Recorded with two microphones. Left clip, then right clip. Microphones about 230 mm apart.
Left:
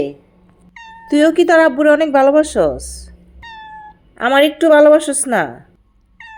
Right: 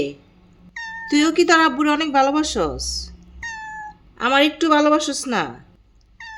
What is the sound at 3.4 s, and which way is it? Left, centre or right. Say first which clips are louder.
Cat: right 3 dB; right.